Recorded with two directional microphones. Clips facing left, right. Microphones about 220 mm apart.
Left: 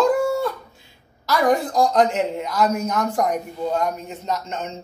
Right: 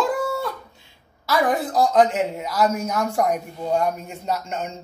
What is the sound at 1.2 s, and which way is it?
A man's voice, 5° right (ahead or behind).